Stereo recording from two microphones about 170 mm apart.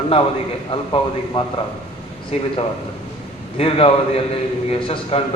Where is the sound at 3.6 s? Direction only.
35° left (ahead or behind).